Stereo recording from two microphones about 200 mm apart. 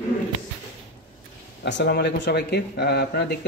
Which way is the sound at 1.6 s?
60° left (ahead or behind).